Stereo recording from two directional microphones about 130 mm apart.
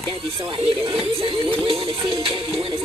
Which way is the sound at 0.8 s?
45° right (ahead or behind).